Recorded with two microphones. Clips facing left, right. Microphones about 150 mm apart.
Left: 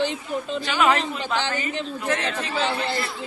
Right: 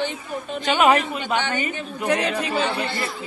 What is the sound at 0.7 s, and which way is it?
Speech, 20° right (ahead or behind).